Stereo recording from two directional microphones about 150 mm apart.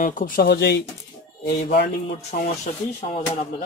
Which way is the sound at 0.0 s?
65° left (ahead or behind).